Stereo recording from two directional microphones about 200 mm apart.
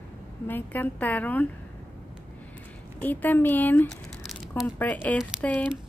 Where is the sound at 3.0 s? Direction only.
10° left (ahead or behind).